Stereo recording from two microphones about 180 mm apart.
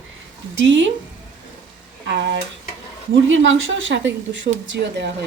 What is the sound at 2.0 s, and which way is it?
Speech, 80° right.